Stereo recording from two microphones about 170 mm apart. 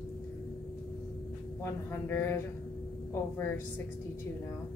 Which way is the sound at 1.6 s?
15° left (ahead or behind).